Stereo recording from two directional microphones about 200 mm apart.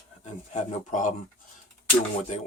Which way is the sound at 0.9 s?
40° left (ahead or behind).